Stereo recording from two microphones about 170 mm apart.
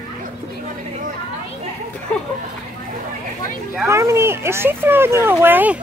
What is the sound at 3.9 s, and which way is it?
Speech, 15° right (ahead or behind).